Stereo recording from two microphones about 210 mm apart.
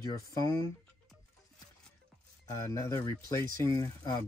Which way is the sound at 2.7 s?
15° left (ahead or behind).